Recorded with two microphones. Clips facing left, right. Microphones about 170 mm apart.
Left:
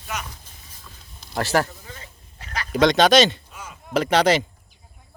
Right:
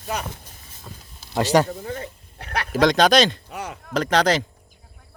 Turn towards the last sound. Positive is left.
turn(degrees=5)  # may be behind; listen again after turning